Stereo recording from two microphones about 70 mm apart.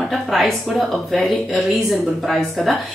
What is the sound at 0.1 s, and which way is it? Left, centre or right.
Speech, centre.